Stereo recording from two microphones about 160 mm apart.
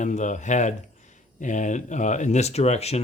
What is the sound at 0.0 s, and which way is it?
Speech, 50° left (ahead or behind).